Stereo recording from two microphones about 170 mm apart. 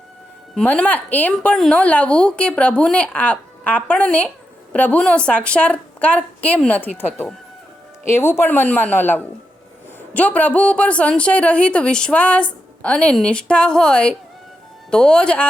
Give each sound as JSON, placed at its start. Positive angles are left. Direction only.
{"t": 0.5, "sound": "speech", "side_deg": 5}